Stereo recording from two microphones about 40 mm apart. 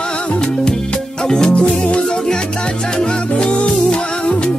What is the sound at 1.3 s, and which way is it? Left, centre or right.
Music, centre.